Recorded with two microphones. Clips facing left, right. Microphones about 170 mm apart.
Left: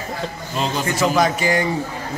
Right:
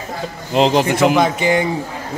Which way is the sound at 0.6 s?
70° right (ahead or behind).